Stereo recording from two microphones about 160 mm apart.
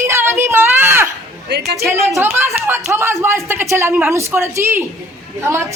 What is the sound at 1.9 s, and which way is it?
Speech, 20° right (ahead or behind).